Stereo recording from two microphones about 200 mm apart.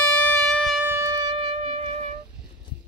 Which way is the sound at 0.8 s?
15° right (ahead or behind).